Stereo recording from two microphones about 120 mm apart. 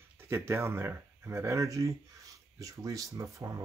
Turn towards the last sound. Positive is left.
turn(degrees=-30)  # may be behind; listen again after turning